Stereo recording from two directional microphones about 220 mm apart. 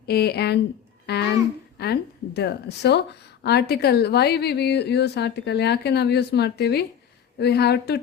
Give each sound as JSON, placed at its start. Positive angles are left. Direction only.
{"t": 0.0, "sound": "a woman's voice", "side_deg": 45}